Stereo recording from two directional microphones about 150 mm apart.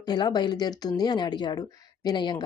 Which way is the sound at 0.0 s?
25° left (ahead or behind).